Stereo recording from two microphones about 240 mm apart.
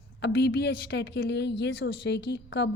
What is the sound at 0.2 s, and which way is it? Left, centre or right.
Speech, left.